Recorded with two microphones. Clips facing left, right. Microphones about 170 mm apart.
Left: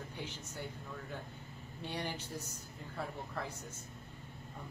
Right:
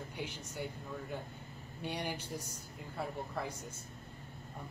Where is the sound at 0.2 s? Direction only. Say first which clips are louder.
Right 4 dB; 10° right (ahead or behind).